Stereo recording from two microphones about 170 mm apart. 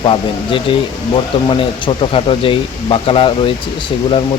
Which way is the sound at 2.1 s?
30° left (ahead or behind).